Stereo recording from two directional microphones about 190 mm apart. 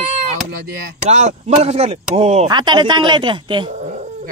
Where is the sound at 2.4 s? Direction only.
25° right (ahead or behind).